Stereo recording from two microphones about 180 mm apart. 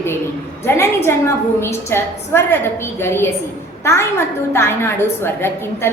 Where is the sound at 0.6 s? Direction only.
15° left (ahead or behind).